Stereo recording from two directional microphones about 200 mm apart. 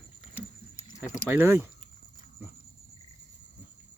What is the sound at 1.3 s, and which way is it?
Speech, 10° right (ahead or behind).